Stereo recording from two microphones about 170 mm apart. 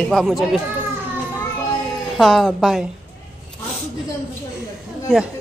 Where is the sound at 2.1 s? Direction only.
Centre (ahead or behind).